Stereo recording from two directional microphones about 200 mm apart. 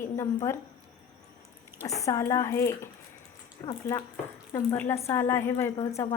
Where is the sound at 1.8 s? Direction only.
15° left (ahead or behind).